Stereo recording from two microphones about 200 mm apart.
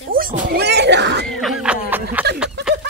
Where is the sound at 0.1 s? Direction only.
45° right (ahead or behind).